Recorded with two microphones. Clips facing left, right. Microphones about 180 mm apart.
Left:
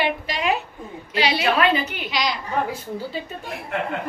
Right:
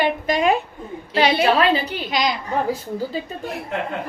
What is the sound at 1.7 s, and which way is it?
Speech, 30° right (ahead or behind).